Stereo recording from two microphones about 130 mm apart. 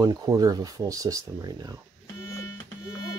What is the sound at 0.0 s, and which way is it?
Speech, 30° right (ahead or behind).